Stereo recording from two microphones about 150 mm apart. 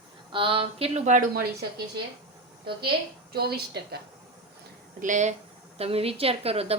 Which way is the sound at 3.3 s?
90° right.